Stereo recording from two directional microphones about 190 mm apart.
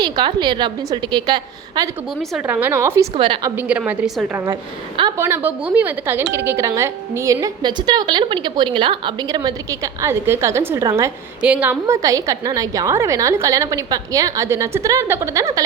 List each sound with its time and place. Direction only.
0.0 s a woman's voice: 25° right (ahead or behind)
2.5 s a woman's voice: 10° right (ahead or behind)
3.2 s a woman's voice: 25° right (ahead or behind)
3.5 s a woman's voice: 10° right (ahead or behind)